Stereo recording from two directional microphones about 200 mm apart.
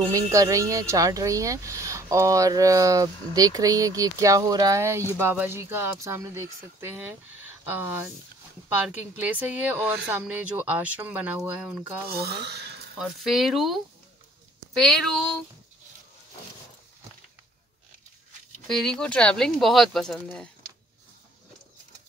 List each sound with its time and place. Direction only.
0.0 s speech: 15° right (ahead or behind)
12.1 s speech: 55° right (ahead or behind)
13.0 s speech: centre (ahead or behind)
18.7 s speech: centre (ahead or behind)